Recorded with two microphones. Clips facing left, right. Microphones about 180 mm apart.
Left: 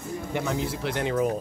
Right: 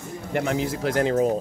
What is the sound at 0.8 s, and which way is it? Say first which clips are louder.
Speech: right 6 dB; 40° right (ahead or behind).